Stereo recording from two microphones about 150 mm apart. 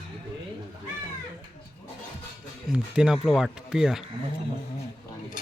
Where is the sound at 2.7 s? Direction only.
5° right (ahead or behind).